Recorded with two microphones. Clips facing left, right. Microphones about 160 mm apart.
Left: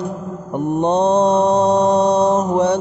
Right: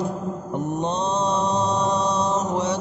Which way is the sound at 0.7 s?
60° left (ahead or behind).